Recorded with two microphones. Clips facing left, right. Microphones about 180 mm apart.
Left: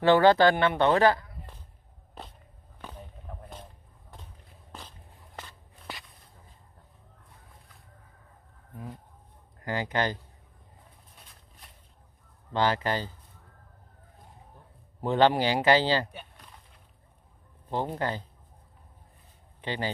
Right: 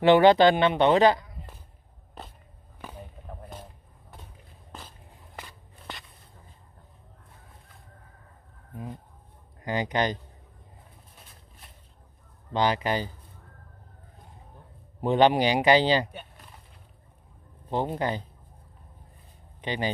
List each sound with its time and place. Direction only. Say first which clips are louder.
0.0 s speech: right 2 dB; 20° right (ahead or behind)
4.7 s walk: right 1 dB; 5° right (ahead or behind)
9.6 s speech: right 2 dB; 20° right (ahead or behind)
12.5 s speech: right 1 dB; 15° right (ahead or behind)
15.0 s speech: right 2 dB; 15° right (ahead or behind)
16.1 s a sound: right 2 dB; centre (ahead or behind)
17.6 s speech: right 2 dB; 15° right (ahead or behind)
19.6 s speech: right 2 dB; 15° right (ahead or behind)